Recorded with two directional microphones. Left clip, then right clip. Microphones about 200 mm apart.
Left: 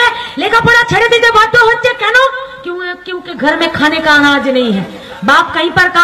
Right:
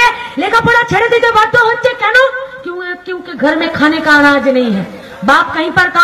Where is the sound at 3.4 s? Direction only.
40° left (ahead or behind).